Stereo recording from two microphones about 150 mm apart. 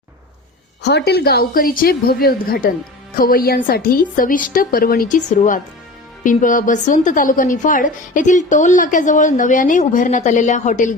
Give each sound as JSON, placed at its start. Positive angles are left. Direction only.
{"t": 0.8, "sound": "a woman's voice", "side_deg": 90}
{"t": 3.2, "sound": "a woman's voice", "side_deg": 75}